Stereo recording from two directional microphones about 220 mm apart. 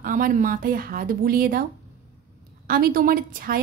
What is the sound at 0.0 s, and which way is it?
A woman's voice, 35° right (ahead or behind).